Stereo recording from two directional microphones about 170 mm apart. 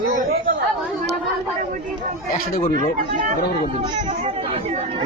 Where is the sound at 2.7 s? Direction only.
50° right (ahead or behind).